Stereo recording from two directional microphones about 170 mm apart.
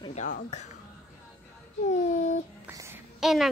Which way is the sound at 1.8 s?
45° left (ahead or behind).